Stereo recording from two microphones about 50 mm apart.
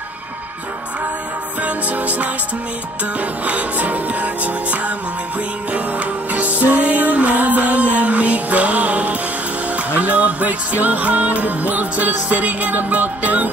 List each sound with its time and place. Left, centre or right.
1.6 s music: right